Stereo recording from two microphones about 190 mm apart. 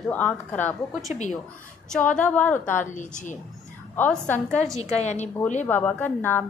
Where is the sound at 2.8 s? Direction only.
40° left (ahead or behind).